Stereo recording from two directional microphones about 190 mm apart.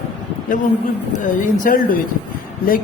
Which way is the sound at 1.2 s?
45° left (ahead or behind).